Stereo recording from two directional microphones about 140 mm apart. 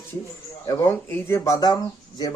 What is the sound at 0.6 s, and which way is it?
A man's voice, 15° left (ahead or behind).